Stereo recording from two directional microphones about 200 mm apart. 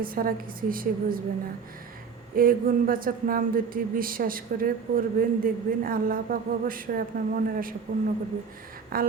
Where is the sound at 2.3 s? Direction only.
45° right (ahead or behind).